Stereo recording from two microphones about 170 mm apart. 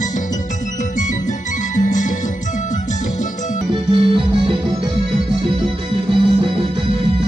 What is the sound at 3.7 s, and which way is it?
Organ, 30° right (ahead or behind).